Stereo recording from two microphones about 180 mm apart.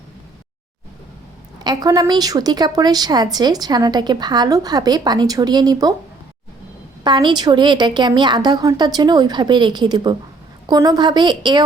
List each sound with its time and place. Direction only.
1.6 s a woman's voice: 20° right (ahead or behind)
7.0 s a woman's voice: 25° right (ahead or behind)